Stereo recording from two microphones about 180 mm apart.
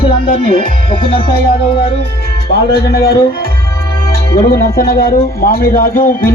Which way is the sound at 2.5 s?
60° left (ahead or behind).